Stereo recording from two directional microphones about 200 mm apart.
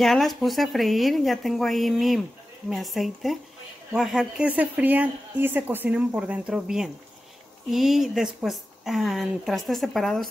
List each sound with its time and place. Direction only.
0.0 s a woman's voice: centre (ahead or behind)